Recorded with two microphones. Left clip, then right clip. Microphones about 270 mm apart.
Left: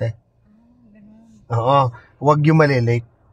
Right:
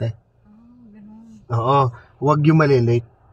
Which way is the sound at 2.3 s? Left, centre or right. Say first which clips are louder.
Left 2 dB; left.